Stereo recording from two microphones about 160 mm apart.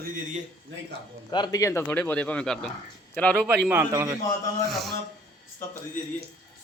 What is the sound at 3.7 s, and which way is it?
Speech, 15° right (ahead or behind).